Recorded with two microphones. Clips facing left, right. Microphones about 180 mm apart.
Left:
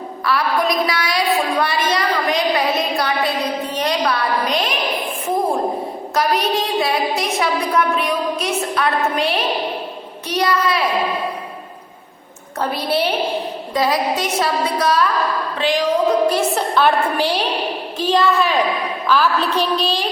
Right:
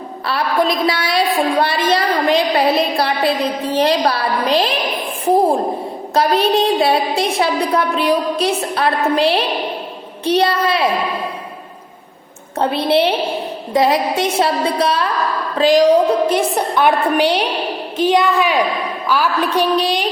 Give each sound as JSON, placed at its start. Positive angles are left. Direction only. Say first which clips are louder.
{"t": 0.3, "sound": "a woman's voice", "louder": "right 1 dB", "side_deg": -25}
{"t": 6.1, "sound": "a woman's voice", "louder": "right 4 dB", "side_deg": -30}
{"t": 12.5, "sound": "a woman's voice", "louder": "right 5 dB", "side_deg": -25}
{"t": 15.5, "sound": "a woman's voice", "louder": "right 9 dB", "side_deg": -40}
{"t": 16.3, "sound": "a woman's voice", "louder": "right 2 dB", "side_deg": -15}